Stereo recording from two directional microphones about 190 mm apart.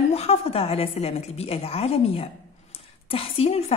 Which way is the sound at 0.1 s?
30° left (ahead or behind).